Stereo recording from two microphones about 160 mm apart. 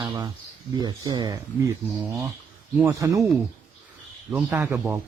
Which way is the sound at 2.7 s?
15° right (ahead or behind).